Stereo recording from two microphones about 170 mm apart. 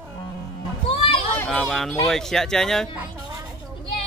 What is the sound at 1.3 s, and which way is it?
Children playing, 10° left (ahead or behind).